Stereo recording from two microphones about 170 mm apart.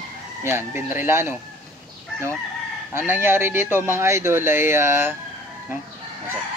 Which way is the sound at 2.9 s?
15° right (ahead or behind).